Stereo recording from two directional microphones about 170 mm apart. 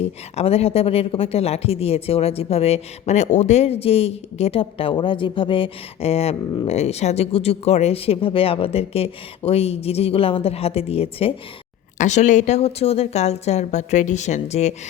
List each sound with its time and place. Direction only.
0.0 s speech: 35° left (ahead or behind)